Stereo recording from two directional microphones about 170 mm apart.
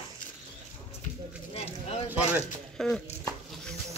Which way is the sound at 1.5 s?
35° left (ahead or behind).